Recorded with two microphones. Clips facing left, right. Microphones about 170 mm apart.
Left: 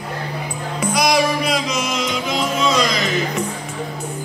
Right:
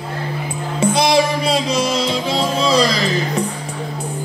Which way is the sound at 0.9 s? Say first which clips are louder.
Even; 25° right (ahead or behind).